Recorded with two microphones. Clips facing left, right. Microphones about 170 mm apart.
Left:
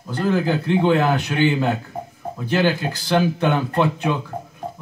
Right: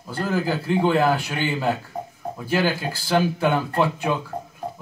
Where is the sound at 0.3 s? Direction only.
5° right (ahead or behind).